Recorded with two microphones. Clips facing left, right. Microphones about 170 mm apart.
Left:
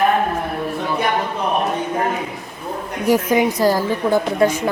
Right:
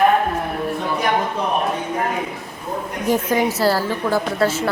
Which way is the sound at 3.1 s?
10° left (ahead or behind).